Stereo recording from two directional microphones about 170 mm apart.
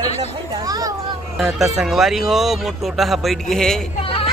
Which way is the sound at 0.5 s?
20° right (ahead or behind).